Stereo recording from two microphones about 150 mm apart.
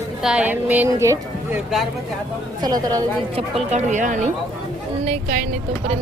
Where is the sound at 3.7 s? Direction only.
55° right (ahead or behind).